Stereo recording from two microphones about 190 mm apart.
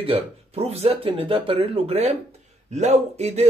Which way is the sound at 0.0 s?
30° right (ahead or behind).